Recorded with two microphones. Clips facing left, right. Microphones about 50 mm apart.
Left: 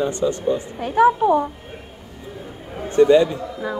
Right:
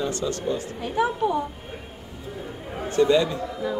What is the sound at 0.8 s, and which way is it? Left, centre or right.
Speech, left.